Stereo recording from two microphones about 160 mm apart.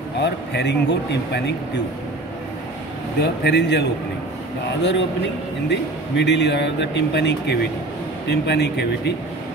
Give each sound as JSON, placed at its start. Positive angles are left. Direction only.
{"t": 0.2, "sound": "speech", "side_deg": 90}
{"t": 3.2, "sound": "speech", "side_deg": 90}
{"t": 5.7, "sound": "speech", "side_deg": 90}